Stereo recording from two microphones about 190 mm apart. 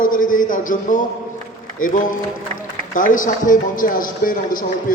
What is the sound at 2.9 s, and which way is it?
A man's voice, 45° left (ahead or behind).